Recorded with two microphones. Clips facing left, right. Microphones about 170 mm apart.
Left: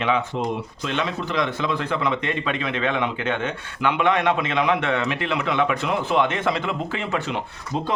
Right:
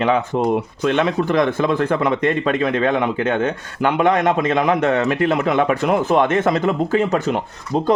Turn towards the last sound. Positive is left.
turn(degrees=-45)  # may be behind; listen again after turning